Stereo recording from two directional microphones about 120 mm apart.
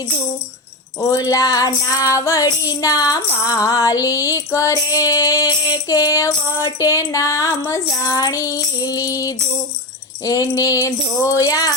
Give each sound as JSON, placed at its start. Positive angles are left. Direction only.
{"t": 1.0, "sound": "music", "side_deg": 30}